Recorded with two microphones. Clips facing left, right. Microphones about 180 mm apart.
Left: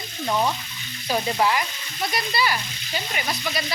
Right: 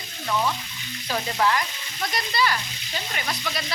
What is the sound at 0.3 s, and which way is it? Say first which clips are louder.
Frying: left 2 dB; 25° left (ahead or behind).